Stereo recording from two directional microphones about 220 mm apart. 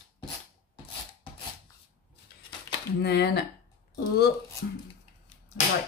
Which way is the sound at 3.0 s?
50° left (ahead or behind).